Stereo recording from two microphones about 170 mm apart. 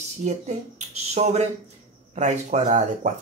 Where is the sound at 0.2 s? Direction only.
40° right (ahead or behind).